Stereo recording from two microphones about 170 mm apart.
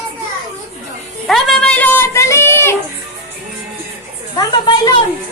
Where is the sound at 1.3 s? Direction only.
5° left (ahead or behind).